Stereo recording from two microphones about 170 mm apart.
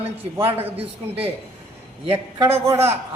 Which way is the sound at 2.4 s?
15° right (ahead or behind).